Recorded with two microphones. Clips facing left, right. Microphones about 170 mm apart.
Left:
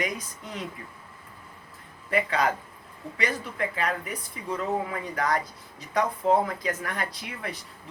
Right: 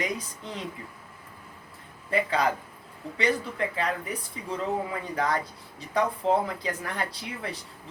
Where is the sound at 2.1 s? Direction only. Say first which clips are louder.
Even; 30° right (ahead or behind).